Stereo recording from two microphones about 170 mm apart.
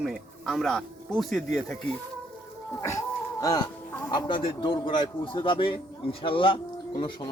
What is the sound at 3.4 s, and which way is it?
A man's voice, 20° left (ahead or behind).